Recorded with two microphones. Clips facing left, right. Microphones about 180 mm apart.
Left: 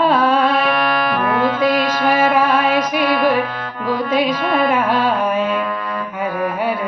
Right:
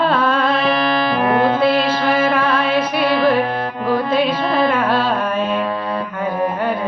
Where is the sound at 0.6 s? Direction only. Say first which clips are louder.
Right 1 dB; 30° right (ahead or behind).